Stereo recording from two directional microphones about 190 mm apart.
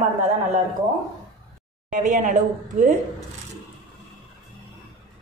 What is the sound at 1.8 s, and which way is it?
A woman's voice, 40° right (ahead or behind).